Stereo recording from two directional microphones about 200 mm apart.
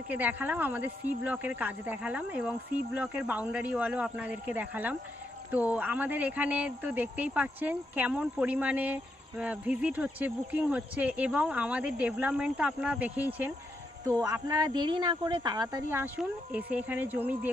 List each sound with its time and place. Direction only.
0.1 s speech: 10° right (ahead or behind)